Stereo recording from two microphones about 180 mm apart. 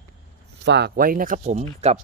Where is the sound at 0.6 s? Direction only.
70° right (ahead or behind); by 1.7 s 40° right (ahead or behind).